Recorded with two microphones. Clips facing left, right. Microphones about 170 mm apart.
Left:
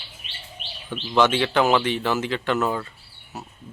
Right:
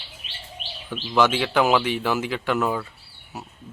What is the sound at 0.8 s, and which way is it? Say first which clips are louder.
Speech: left 1 dB; 5° right (ahead or behind).